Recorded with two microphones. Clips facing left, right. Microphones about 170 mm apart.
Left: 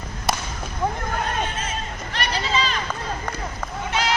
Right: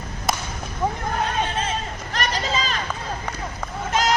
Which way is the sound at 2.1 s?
40° right (ahead or behind).